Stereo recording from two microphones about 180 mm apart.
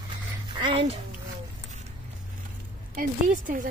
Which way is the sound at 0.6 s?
30° right (ahead or behind).